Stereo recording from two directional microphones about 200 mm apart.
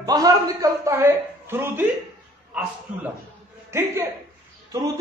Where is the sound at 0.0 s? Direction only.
20° right (ahead or behind).